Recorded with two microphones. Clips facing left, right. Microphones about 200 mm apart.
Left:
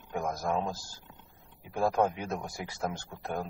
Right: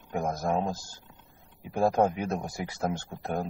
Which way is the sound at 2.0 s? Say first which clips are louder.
Right 3 dB; 30° right (ahead or behind).